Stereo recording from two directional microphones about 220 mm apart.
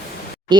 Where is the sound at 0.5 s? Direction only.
20° right (ahead or behind).